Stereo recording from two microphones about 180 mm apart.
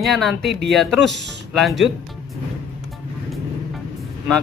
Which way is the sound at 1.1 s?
80° right.